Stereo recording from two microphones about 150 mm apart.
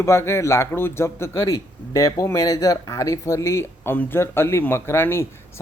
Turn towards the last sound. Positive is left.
turn(degrees=15)  # may be behind; listen again after turning